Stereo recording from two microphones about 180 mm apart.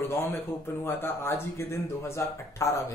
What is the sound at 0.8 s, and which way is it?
Speech, 15° left (ahead or behind).